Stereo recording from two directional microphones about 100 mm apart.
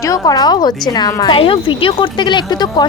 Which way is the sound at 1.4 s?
65° left (ahead or behind).